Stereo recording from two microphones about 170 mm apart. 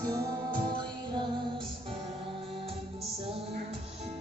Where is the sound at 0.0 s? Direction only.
20° right (ahead or behind).